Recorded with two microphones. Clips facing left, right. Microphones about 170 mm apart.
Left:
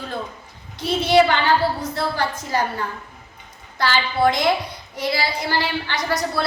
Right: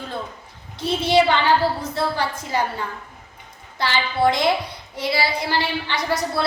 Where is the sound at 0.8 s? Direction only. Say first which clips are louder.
Left 2 dB; 25° right (ahead or behind).